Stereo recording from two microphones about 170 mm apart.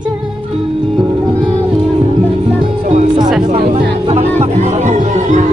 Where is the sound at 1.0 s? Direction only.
25° right (ahead or behind).